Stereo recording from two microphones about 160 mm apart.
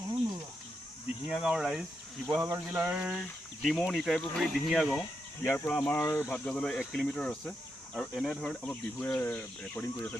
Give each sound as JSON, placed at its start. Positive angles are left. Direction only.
{"t": 1.3, "sound": "speech", "side_deg": 0}
{"t": 2.4, "sound": "a sound", "side_deg": -10}
{"t": 3.7, "sound": "speech", "side_deg": 0}
{"t": 5.5, "sound": "speech", "side_deg": 10}
{"t": 6.3, "sound": "speech", "side_deg": 5}